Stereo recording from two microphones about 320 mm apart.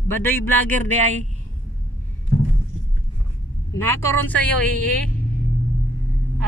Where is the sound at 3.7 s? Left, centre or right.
Centre.